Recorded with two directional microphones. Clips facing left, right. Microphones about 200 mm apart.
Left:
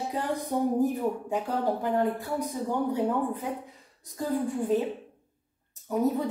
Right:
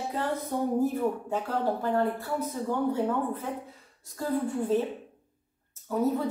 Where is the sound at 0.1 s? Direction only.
15° left (ahead or behind).